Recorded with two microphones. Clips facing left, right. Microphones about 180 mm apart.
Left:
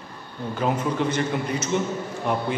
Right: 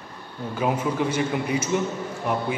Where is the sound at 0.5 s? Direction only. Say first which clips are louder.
Even; 10° right (ahead or behind).